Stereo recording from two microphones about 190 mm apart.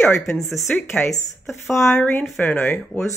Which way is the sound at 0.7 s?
10° left (ahead or behind).